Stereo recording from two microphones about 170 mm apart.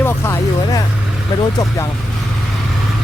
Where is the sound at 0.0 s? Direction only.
15° left (ahead or behind).